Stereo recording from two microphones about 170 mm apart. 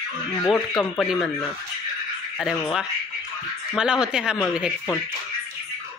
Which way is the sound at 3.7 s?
5° right (ahead or behind).